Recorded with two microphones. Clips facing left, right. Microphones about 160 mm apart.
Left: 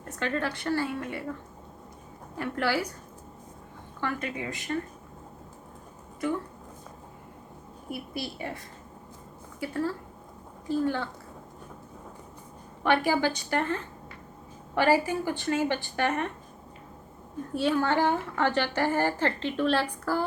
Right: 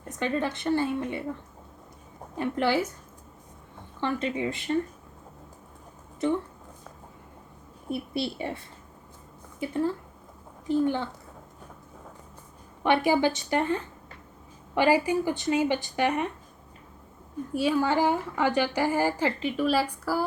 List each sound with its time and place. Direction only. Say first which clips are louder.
0.1 s a woman's voice: right 2 dB; 20° right (ahead or behind)
2.3 s a woman's voice: right 3 dB; 20° right (ahead or behind)
4.0 s a woman's voice: right 4 dB; 25° right (ahead or behind)
7.9 s a woman's voice: right 5 dB; 25° right (ahead or behind)
12.8 s a woman's voice: right 2 dB; 20° right (ahead or behind)
17.5 s a woman's voice: right 1 dB; 10° right (ahead or behind)